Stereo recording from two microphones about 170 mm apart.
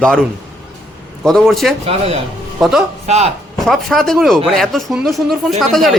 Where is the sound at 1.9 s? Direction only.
35° right (ahead or behind).